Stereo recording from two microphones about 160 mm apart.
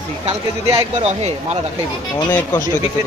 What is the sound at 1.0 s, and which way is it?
Speech, 45° right (ahead or behind).